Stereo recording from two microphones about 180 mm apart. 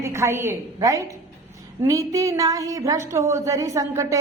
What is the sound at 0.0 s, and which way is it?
A woman's voice, 15° right (ahead or behind).